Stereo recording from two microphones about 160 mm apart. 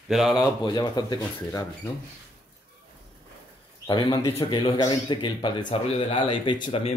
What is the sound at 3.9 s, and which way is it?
A man's voice, 30° left (ahead or behind).